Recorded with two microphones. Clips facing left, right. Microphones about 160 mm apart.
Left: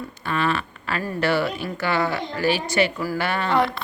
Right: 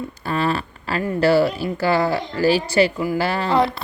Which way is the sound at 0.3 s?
35° right (ahead or behind).